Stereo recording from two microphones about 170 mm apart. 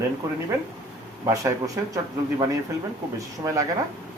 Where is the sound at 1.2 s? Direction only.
20° right (ahead or behind).